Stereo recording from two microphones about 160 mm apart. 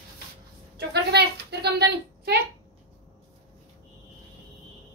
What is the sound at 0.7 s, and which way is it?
A woman's voice, 90° right.